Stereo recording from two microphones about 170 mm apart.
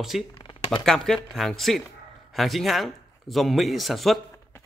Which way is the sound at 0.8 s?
5° left (ahead or behind).